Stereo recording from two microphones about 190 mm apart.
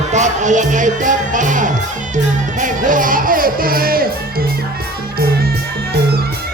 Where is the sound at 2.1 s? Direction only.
40° right (ahead or behind).